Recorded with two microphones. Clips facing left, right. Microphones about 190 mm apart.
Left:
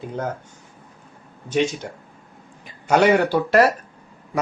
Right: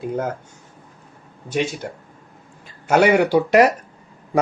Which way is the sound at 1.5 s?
10° right (ahead or behind).